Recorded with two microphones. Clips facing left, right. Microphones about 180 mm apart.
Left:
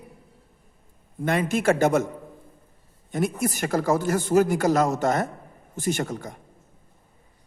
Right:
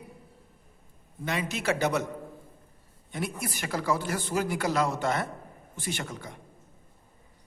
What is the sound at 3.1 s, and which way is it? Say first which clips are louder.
Speech: left 9 dB; 45° left (ahead or behind).